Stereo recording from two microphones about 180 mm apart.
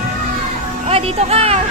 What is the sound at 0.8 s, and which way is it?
Music, 35° right (ahead or behind).